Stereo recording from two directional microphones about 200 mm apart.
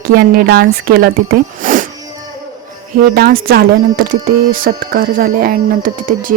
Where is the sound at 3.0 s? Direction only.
45° right (ahead or behind).